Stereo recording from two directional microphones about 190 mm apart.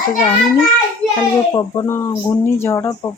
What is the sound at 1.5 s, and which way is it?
Speech, 20° left (ahead or behind).